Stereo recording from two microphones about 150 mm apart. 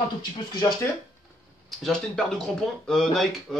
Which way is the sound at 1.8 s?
5° left (ahead or behind).